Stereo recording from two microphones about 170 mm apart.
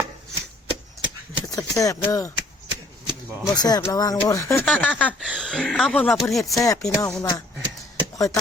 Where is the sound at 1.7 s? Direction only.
20° left (ahead or behind).